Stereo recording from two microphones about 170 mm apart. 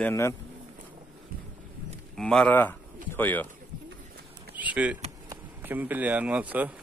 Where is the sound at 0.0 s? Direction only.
15° left (ahead or behind).